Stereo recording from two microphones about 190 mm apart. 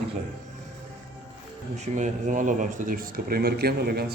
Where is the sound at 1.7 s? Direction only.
40° right (ahead or behind).